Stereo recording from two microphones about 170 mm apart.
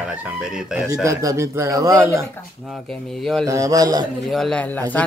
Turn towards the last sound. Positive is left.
turn(degrees=10)  # may be behind; listen again after turning